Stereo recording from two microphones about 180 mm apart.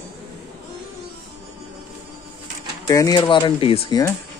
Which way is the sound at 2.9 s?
20° left (ahead or behind).